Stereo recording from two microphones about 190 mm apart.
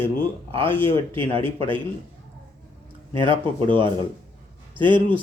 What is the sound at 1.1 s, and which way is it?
Speech, 30° right (ahead or behind).